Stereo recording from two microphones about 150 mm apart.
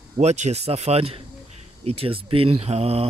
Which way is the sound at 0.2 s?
45° right (ahead or behind).